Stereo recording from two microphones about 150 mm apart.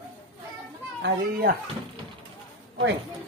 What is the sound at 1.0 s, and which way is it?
Speech, 75° right (ahead or behind).